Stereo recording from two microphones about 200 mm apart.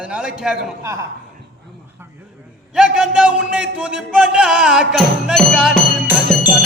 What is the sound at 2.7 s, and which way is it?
A man's voice, 5° right (ahead or behind).